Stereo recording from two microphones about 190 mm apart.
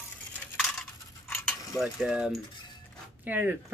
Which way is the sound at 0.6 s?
Centre (ahead or behind).